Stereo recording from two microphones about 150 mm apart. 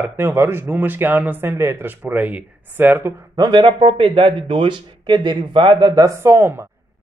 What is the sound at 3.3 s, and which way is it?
Speech, 30° right (ahead or behind).